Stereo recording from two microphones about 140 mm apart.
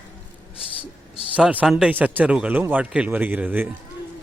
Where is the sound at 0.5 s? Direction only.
40° left (ahead or behind).